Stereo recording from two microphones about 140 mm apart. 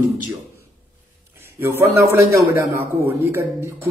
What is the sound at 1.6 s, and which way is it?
Speech, 15° right (ahead or behind).